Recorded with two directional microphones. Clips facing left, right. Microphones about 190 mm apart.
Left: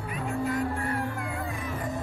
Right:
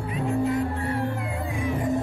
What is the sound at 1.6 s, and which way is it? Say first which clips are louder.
Music: right 7 dB; 15° right (ahead or behind).